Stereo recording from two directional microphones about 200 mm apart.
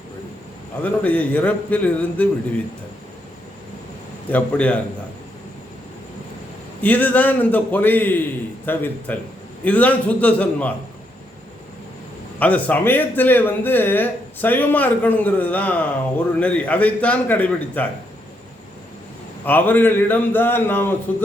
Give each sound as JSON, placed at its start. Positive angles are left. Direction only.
{"t": 0.8, "sound": "speech", "side_deg": 5}
{"t": 4.3, "sound": "speech", "side_deg": 5}
{"t": 6.8, "sound": "speech", "side_deg": 10}
{"t": 12.4, "sound": "speech", "side_deg": 5}
{"t": 19.5, "sound": "speech", "side_deg": 10}